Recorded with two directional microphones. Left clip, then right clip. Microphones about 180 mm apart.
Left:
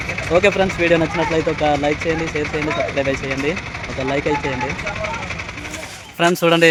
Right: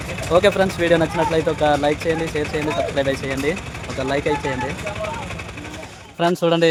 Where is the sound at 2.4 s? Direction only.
65° right (ahead or behind).